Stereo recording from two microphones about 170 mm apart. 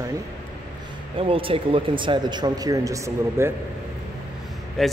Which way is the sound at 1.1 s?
30° right (ahead or behind).